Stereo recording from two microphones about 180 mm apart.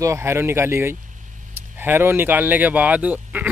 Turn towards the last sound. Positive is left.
turn(degrees=-10)  # may be behind; listen again after turning